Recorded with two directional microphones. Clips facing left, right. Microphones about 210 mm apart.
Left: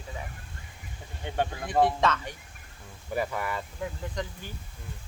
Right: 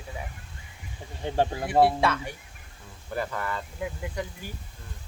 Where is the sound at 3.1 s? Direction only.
10° left (ahead or behind).